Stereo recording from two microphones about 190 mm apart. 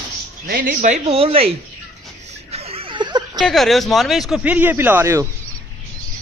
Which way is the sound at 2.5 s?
30° right (ahead or behind).